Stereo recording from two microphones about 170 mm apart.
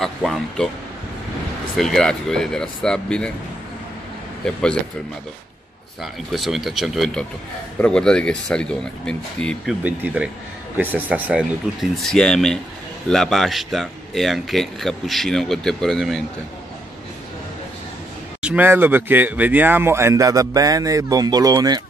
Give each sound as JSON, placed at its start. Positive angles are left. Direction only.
{"t": 0.0, "sound": "speech", "side_deg": 0}
{"t": 1.8, "sound": "speech", "side_deg": 0}
{"t": 4.4, "sound": "speech", "side_deg": 5}
{"t": 6.3, "sound": "speech", "side_deg": 0}
{"t": 9.8, "sound": "speech", "side_deg": -10}
{"t": 18.4, "sound": "speech", "side_deg": -10}